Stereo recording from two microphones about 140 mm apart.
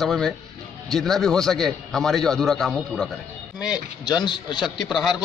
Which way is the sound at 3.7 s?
30° left (ahead or behind).